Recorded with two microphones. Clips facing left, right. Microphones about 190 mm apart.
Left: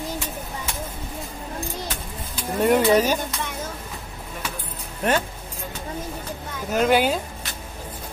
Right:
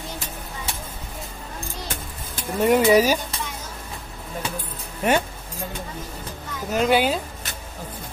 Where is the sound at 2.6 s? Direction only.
5° right (ahead or behind).